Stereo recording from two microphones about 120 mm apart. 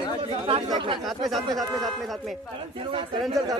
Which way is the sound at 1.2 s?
Centre (ahead or behind).